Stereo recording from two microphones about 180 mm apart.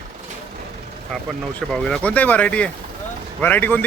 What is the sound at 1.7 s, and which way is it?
Speech, 5° left (ahead or behind).